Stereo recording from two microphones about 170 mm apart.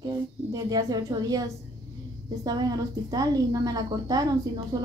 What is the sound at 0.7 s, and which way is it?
Speech, 20° right (ahead or behind).